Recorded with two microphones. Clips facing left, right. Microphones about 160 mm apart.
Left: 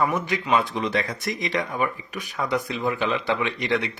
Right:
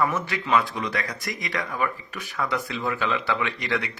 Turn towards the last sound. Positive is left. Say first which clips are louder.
# left 3 dB
turn(degrees=20)  # may be behind; listen again after turning